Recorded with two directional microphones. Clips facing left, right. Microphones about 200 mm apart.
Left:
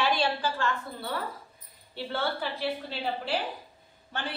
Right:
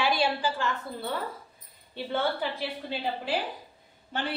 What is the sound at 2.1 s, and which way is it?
A woman's voice, 15° right (ahead or behind).